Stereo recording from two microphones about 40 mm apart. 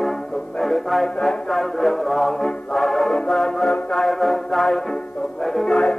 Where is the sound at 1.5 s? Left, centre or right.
Centre.